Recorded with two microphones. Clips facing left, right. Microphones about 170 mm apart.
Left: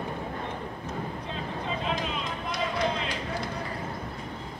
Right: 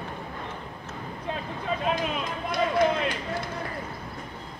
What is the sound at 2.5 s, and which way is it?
Run, 55° right (ahead or behind).